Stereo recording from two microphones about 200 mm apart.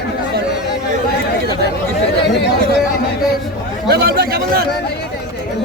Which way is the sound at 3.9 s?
55° right (ahead or behind).